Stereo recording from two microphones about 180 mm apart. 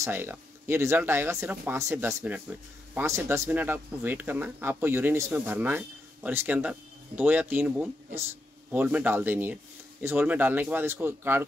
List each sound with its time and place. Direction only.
0.0 s speech: 10° right (ahead or behind)